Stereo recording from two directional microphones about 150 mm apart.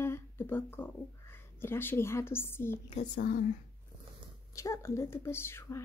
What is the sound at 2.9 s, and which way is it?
Speech, 55° left (ahead or behind).